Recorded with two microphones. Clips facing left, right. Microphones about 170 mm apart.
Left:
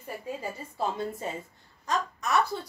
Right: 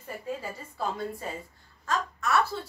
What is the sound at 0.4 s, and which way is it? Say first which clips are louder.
A woman's voice: left 2 dB; 25° left (ahead or behind).